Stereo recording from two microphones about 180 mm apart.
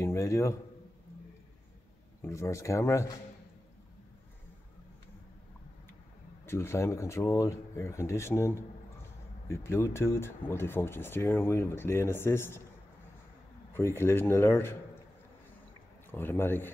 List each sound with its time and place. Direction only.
0.0 s a man's voice: 15° left (ahead or behind)
2.2 s speech: 15° left (ahead or behind)
6.4 s speech: 15° left (ahead or behind)
13.7 s speech: 15° left (ahead or behind)
16.1 s speech: 10° left (ahead or behind)